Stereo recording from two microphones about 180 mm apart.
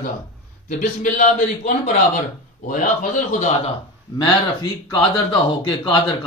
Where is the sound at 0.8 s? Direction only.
45° left (ahead or behind).